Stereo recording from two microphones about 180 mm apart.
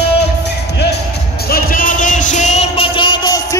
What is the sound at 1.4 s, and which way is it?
Music, 55° left (ahead or behind).